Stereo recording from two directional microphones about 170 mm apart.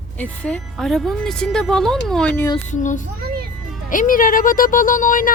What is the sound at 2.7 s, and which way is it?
Speech, 45° left (ahead or behind).